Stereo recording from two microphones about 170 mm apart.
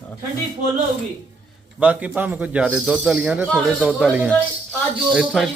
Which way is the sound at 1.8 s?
10° right (ahead or behind).